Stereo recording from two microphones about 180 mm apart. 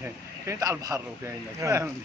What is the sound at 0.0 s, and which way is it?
Speech, 15° right (ahead or behind).